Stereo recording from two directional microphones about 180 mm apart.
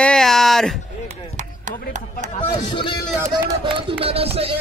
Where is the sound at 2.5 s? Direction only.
25° left (ahead or behind).